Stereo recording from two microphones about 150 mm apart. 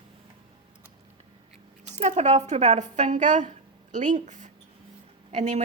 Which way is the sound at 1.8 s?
50° right (ahead or behind).